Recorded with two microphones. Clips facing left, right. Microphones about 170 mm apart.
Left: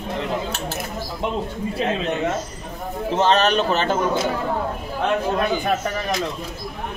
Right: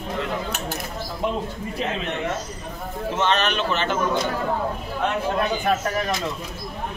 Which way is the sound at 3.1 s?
35° left (ahead or behind).